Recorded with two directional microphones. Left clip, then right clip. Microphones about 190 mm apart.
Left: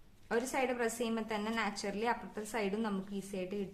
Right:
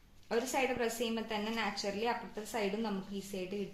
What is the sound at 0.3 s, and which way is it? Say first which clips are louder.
A woman's voice: right 1 dB; 20° left (ahead or behind).